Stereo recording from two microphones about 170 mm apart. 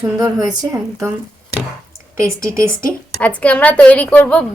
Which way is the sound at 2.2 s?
15° right (ahead or behind).